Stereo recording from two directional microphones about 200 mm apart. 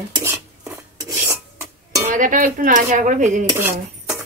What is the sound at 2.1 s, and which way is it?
A woman's voice, 40° right (ahead or behind).